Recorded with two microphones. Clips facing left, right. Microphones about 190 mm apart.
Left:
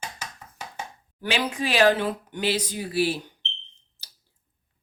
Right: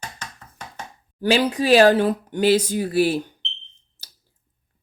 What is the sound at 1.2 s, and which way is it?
Speech, 35° right (ahead or behind).